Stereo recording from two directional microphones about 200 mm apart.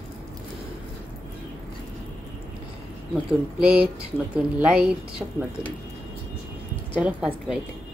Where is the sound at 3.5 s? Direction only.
5° right (ahead or behind).